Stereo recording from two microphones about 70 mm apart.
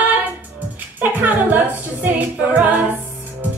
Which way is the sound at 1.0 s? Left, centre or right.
Right.